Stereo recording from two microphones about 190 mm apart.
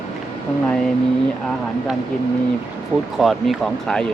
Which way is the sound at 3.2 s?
Centre (ahead or behind).